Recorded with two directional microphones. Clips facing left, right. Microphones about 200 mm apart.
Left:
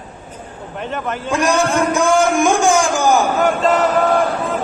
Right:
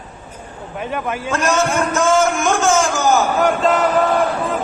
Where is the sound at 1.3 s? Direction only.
15° left (ahead or behind).